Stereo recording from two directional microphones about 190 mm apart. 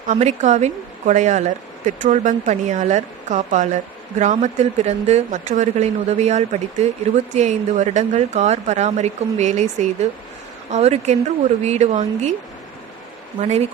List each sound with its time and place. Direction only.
0.1 s speech: 40° right (ahead or behind)
13.4 s speech: 35° right (ahead or behind)